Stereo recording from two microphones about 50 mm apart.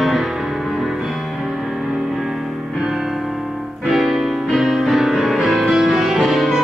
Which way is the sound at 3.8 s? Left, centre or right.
Centre.